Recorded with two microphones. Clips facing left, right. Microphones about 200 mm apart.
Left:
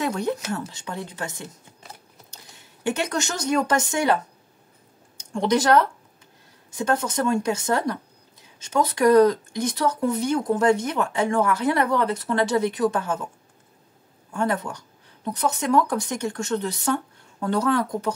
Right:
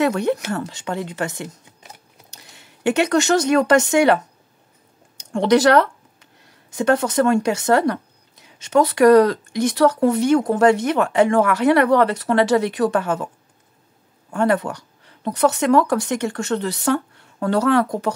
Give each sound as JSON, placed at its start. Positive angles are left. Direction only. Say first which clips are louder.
{"t": 0.0, "sound": "speech", "louder": "right 6 dB", "side_deg": -70}
{"t": 5.3, "sound": "speech", "louder": "right 5 dB", "side_deg": -75}
{"t": 14.3, "sound": "speech", "louder": "right 6 dB", "side_deg": -70}